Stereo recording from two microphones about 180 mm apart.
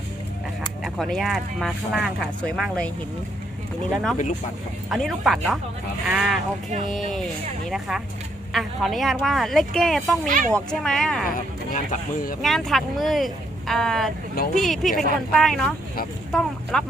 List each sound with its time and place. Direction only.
0.9 s speech: centre (ahead or behind)
3.9 s speech: centre (ahead or behind)
10.2 s speech: 50° right (ahead or behind)
10.5 s speech: 5° left (ahead or behind)
11.3 s speech: 50° left (ahead or behind)
12.4 s speech: centre (ahead or behind)